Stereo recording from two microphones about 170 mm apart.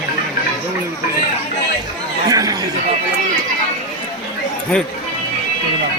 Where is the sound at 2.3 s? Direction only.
20° right (ahead or behind).